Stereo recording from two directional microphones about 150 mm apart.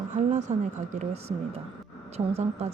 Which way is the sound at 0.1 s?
50° right (ahead or behind).